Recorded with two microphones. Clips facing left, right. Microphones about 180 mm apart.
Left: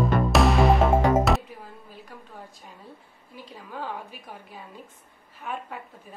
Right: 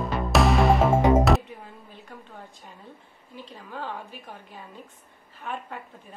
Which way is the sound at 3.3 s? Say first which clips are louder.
Even; 10° left (ahead or behind).